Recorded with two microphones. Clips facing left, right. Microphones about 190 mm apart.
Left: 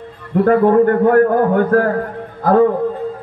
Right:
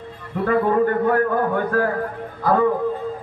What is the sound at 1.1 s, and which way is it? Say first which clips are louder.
A man's voice: left 7 dB; 50° left (ahead or behind).